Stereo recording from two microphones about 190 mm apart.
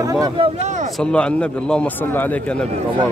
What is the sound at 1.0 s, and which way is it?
A man's voice, 5° left (ahead or behind).